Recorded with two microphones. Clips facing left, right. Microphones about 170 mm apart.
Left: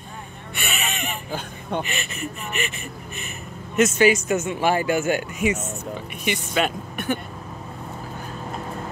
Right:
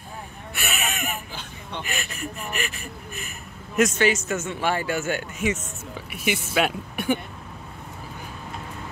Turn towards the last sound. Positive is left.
turn(degrees=-10)  # may be behind; listen again after turning